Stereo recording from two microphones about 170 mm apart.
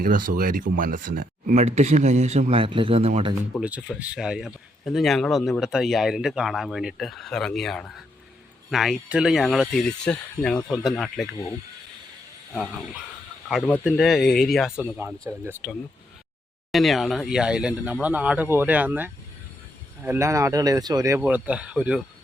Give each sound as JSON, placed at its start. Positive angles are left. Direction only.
{"t": 0.0, "sound": "speech", "side_deg": -55}
{"t": 3.6, "sound": "speech", "side_deg": -5}
{"t": 12.5, "sound": "speech", "side_deg": 0}
{"t": 14.9, "sound": "speech", "side_deg": -15}
{"t": 21.2, "sound": "speech", "side_deg": -10}